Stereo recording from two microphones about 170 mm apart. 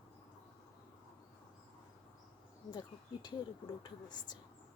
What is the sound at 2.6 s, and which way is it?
Speech, 25° left (ahead or behind).